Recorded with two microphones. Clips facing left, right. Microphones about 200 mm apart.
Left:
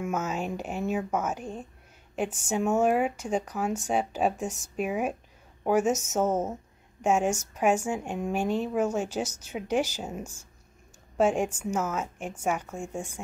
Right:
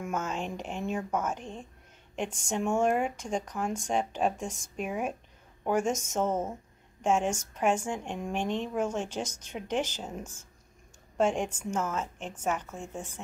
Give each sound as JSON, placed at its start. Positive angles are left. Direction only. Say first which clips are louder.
{"t": 0.0, "sound": "speech", "louder": "left 3 dB", "side_deg": 5}